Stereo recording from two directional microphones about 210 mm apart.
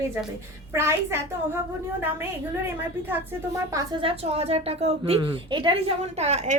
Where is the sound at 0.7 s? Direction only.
10° right (ahead or behind).